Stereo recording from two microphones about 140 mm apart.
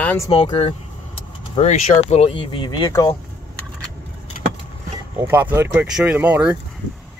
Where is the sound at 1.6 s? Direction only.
50° left (ahead or behind); by 2.9 s 35° left (ahead or behind).